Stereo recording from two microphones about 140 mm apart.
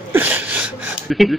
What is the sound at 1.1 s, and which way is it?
Speech, centre (ahead or behind).